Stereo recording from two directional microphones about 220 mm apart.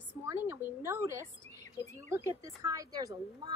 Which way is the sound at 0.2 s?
10° right (ahead or behind).